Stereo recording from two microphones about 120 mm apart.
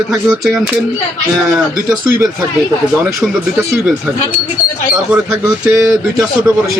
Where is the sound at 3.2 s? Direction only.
Centre (ahead or behind).